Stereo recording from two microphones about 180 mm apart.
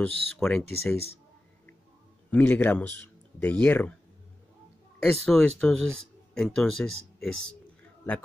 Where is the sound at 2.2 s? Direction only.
10° left (ahead or behind).